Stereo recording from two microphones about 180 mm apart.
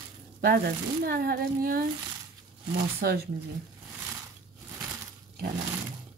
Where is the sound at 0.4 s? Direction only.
60° right (ahead or behind).